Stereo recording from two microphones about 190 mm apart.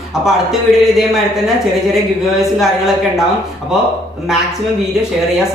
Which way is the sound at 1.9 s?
Centre (ahead or behind).